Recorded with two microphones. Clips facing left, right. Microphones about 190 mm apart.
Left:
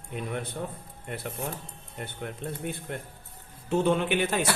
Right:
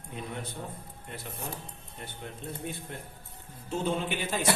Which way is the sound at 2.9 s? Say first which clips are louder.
Left 5 dB; 65° left (ahead or behind).